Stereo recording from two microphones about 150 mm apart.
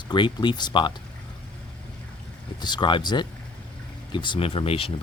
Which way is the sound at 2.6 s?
30° left (ahead or behind).